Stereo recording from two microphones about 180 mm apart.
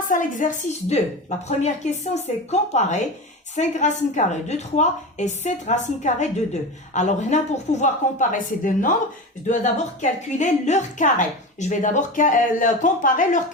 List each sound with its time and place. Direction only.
0.1 s a woman's voice: 45° left (ahead or behind)